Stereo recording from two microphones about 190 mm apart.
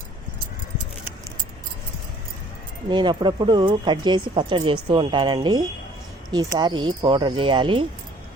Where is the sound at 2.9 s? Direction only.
25° right (ahead or behind).